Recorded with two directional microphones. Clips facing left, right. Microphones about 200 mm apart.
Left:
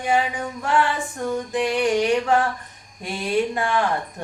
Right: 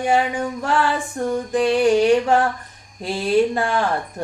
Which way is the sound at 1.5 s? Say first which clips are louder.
Right 5 dB; 30° right (ahead or behind).